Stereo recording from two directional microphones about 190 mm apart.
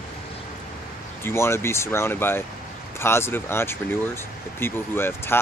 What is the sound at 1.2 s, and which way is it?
Speech, 15° left (ahead or behind).